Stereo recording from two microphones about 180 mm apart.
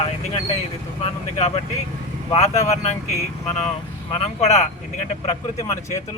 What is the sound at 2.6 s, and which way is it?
Speech, 35° left (ahead or behind).